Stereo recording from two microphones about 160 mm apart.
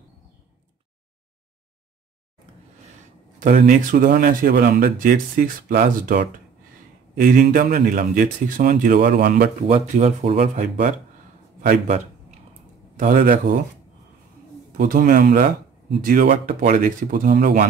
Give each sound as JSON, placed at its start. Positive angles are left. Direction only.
{"t": 3.3, "sound": "speech", "side_deg": -55}
{"t": 9.7, "sound": "speech", "side_deg": -45}
{"t": 12.9, "sound": "a man's voice", "side_deg": -55}
{"t": 14.8, "sound": "speech", "side_deg": -65}